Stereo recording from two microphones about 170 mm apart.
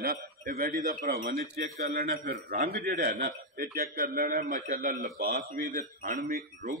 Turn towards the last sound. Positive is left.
turn(degrees=-50)  # may be behind; listen again after turning